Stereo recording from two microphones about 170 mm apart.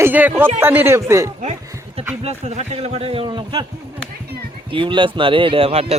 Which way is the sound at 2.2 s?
40° right (ahead or behind).